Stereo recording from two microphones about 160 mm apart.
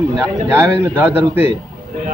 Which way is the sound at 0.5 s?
15° right (ahead or behind).